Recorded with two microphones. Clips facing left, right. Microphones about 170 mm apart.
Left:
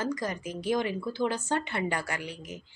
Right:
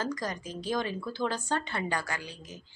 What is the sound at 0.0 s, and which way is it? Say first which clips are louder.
A woman's voice: left 2 dB; 25° left (ahead or behind).